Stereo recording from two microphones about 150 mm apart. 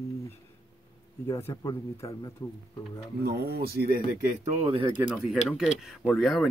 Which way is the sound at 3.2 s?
90° right.